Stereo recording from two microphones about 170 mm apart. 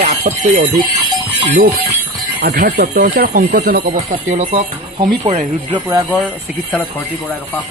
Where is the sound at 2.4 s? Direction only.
60° right (ahead or behind).